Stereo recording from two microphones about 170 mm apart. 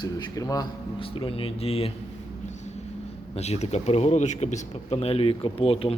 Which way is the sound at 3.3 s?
40° left (ahead or behind).